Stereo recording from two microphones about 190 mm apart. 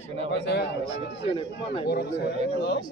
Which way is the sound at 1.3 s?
25° left (ahead or behind).